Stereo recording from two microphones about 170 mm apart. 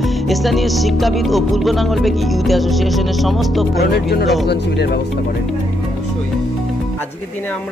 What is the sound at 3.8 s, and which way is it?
Speech, 70° left (ahead or behind).